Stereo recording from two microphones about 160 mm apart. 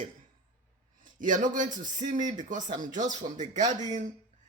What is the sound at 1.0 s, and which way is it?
A man's voice, 55° right (ahead or behind).